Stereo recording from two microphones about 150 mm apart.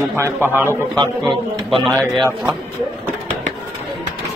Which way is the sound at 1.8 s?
5° left (ahead or behind).